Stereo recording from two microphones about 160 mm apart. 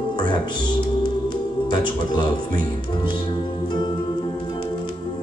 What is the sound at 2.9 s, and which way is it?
Speech, 30° left (ahead or behind).